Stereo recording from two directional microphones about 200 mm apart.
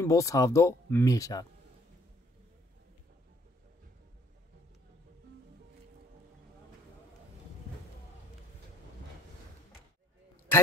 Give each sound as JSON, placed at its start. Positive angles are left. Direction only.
{"t": 0.0, "sound": "speech", "side_deg": 15}